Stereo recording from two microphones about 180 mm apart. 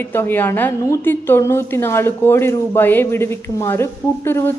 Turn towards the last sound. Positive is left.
turn(degrees=15)  # may be behind; listen again after turning